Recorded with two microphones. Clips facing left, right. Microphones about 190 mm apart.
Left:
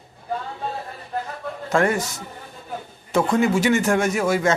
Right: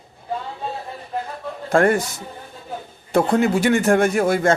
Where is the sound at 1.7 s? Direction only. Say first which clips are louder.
Right 4 dB; 55° right (ahead or behind).